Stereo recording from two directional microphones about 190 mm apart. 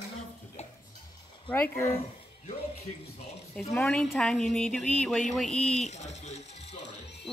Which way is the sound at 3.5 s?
5° left (ahead or behind).